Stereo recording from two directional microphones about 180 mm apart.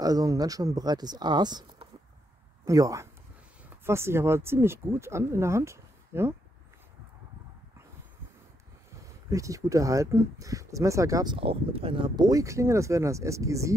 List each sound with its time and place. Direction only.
0.0 s speech: 20° right (ahead or behind)
9.3 s speech: 20° right (ahead or behind)
11.3 s speech: 30° right (ahead or behind)